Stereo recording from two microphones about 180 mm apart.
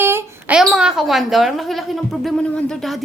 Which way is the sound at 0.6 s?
5° right (ahead or behind).